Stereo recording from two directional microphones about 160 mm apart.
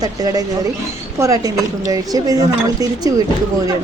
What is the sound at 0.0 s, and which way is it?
Speech, 25° right (ahead or behind).